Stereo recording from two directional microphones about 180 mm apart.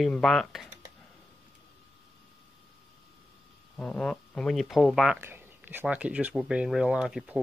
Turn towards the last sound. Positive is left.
turn(degrees=-5)  # may be behind; listen again after turning